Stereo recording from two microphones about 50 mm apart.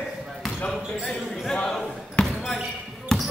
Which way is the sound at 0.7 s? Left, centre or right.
Centre.